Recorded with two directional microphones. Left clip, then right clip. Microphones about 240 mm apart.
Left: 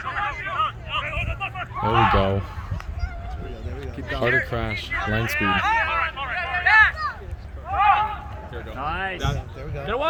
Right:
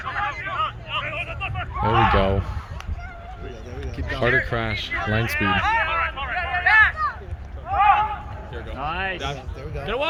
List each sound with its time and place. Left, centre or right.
0.1 s hubbub: centre
4.1 s speech: centre
5.5 s a sound: centre
8.8 s speech: right
9.7 s speech: left